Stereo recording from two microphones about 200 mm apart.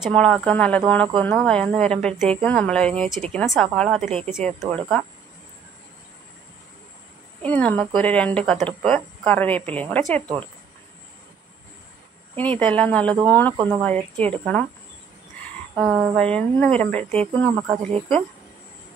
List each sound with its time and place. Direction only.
0.0 s speech: 5° left (ahead or behind)
7.4 s speech: 5° left (ahead or behind)
12.4 s speech: 5° left (ahead or behind)
13.6 s speech: 25° right (ahead or behind)
13.8 s speech: 5° left (ahead or behind)
15.7 s speech: centre (ahead or behind)
17.1 s speech: 30° right (ahead or behind)